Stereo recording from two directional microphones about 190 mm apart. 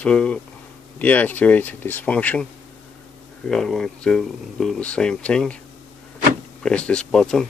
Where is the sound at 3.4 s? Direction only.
Centre (ahead or behind).